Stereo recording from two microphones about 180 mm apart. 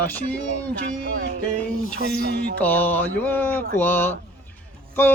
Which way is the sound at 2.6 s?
10° left (ahead or behind).